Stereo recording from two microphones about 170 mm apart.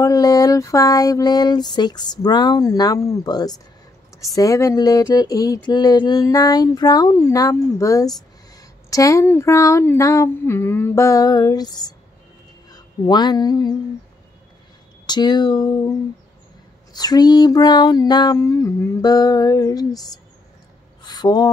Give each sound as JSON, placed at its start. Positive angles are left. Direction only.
{"t": 0.0, "sound": "mantra", "side_deg": 20}
{"t": 8.5, "sound": "speech", "side_deg": 20}
{"t": 15.0, "sound": "mantra", "side_deg": 25}
{"t": 16.9, "sound": "mantra", "side_deg": 25}
{"t": 21.0, "sound": "a sound", "side_deg": 25}